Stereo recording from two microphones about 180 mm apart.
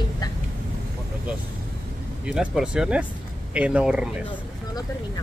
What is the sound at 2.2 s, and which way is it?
Speech, 5° right (ahead or behind).